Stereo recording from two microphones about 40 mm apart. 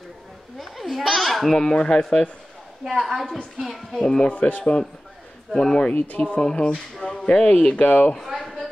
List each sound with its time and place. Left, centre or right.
0.6 s a sound: centre
1.5 s speech: centre
3.0 s a woman's voice: centre
4.0 s speech: centre
4.3 s speech: left
5.6 s speech: centre; by 8.1 s left
8.2 s a sound: centre